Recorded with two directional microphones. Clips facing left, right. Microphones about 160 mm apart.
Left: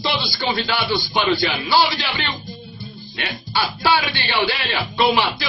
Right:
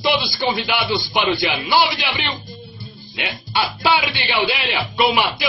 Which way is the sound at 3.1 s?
15° right (ahead or behind).